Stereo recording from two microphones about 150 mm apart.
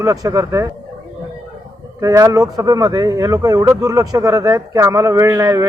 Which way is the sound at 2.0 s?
20° right (ahead or behind).